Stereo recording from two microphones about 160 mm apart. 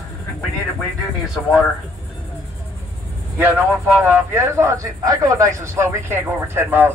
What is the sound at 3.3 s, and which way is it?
A man's voice, 10° right (ahead or behind).